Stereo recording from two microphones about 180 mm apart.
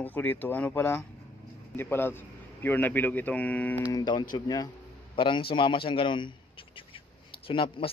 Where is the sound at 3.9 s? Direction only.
25° left (ahead or behind).